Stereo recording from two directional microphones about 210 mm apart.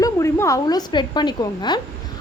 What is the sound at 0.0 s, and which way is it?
A woman's voice, 15° left (ahead or behind).